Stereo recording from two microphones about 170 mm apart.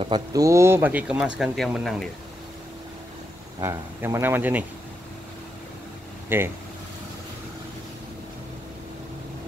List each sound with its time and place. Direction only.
0.0 s speech: 25° right (ahead or behind); by 2.0 s centre (ahead or behind)
3.5 s speech: 15° right (ahead or behind)
6.2 s speech: 15° right (ahead or behind)